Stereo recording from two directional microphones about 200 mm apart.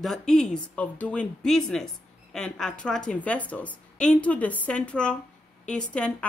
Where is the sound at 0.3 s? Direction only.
5° left (ahead or behind).